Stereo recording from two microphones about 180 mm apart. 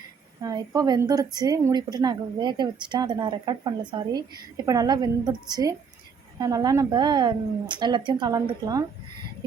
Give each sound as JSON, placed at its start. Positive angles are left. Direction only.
{"t": 0.4, "sound": "a woman's voice", "side_deg": -20}